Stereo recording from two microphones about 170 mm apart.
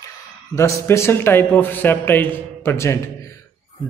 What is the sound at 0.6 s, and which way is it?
A man's voice, 15° left (ahead or behind).